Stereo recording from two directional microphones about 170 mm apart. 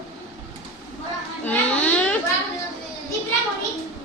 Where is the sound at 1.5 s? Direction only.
10° left (ahead or behind).